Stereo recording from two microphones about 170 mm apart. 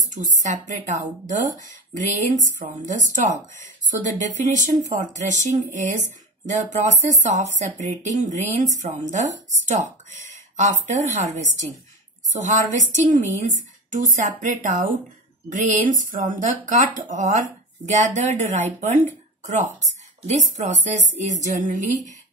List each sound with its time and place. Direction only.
0.4 s a woman's voice: 45° right (ahead or behind)